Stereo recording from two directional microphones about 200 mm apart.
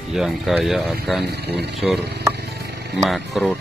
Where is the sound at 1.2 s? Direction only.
55° right (ahead or behind).